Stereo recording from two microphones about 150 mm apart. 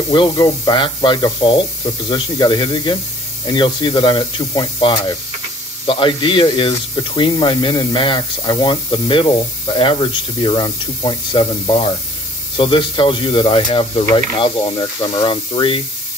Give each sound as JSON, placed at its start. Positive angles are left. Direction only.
{"t": 0.1, "sound": "speech", "side_deg": 30}